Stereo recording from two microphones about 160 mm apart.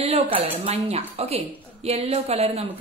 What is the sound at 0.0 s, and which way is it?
A woman's voice, 40° right (ahead or behind).